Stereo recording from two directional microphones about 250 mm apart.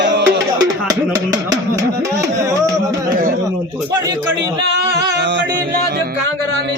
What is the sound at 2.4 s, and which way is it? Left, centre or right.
Music, centre.